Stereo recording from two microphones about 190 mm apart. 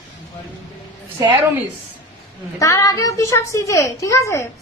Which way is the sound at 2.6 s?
20° left (ahead or behind).